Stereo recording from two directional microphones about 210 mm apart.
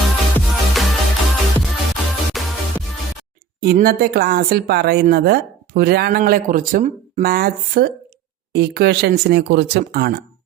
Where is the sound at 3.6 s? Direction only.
45° right (ahead or behind).